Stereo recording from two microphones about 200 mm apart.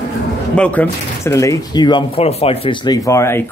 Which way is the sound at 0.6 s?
5° left (ahead or behind).